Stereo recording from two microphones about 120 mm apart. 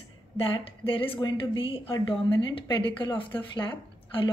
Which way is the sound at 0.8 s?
50° left (ahead or behind).